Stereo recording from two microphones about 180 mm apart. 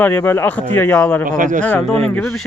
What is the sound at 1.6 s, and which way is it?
Speech, 5° left (ahead or behind).